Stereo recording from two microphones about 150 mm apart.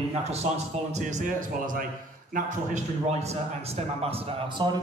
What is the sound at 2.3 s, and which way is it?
Speech, 50° right (ahead or behind).